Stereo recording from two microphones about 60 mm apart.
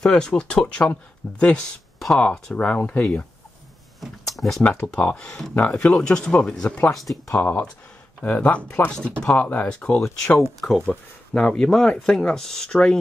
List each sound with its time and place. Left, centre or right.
0.0 s speech: centre
1.4 s speech: centre
4.0 s speech: centre
4.8 s speech: centre
7.3 s speech: left
8.2 s speech: left